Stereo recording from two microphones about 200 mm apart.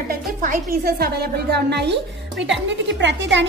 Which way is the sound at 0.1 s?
45° right (ahead or behind).